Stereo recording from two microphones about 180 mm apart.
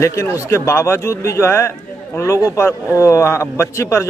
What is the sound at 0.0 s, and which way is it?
A man's voice, 15° left (ahead or behind).